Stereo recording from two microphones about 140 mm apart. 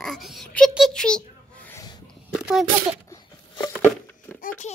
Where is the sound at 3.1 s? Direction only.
25° left (ahead or behind).